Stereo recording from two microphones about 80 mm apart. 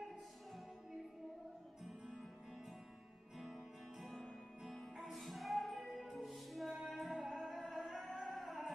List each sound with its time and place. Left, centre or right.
3.3 s music: centre